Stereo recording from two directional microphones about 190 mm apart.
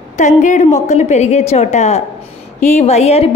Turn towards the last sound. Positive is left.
turn(degrees=35)  # may be behind; listen again after turning